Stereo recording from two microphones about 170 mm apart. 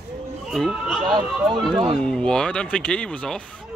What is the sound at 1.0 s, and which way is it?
Speech, 25° right (ahead or behind).